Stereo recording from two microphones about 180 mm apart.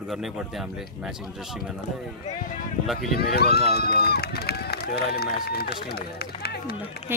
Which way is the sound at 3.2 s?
60° left (ahead or behind).